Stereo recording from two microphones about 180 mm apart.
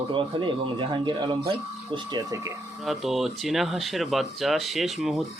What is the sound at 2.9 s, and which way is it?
Speech, centre (ahead or behind).